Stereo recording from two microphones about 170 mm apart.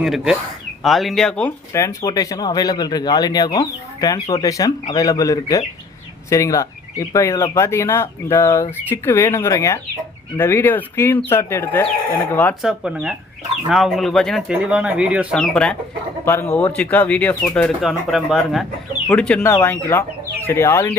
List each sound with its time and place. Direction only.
0.0 s speech: centre (ahead or behind)
12.6 s speech: 5° right (ahead or behind); by 20.9 s 15° left (ahead or behind)